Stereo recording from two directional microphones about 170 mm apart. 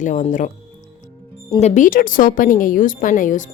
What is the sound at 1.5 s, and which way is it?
A woman's voice, 45° left (ahead or behind).